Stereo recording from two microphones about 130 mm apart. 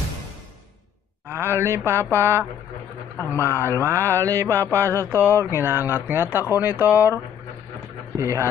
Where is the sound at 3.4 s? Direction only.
20° right (ahead or behind).